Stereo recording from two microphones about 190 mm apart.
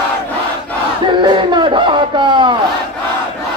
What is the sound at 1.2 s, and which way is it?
Music, 25° right (ahead or behind).